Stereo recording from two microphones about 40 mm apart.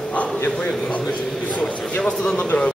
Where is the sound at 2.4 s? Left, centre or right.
Left.